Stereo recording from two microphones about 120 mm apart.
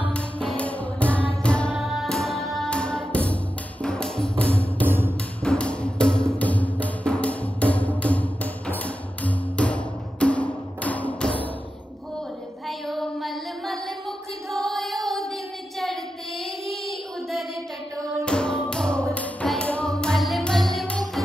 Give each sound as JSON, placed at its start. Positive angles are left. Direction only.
{"t": 0.1, "sound": "music", "side_deg": 10}
{"t": 4.8, "sound": "music", "side_deg": -15}
{"t": 5.4, "sound": "music", "side_deg": 10}
{"t": 12.6, "sound": "child singing", "side_deg": 0}
{"t": 14.5, "sound": "music", "side_deg": 5}
{"t": 16.6, "sound": "child singing", "side_deg": 0}
{"t": 18.2, "sound": "music", "side_deg": 5}